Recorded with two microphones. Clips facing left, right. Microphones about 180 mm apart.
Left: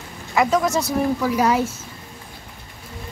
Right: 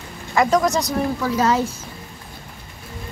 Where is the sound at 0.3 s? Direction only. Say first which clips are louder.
Right 1 dB; 5° left (ahead or behind).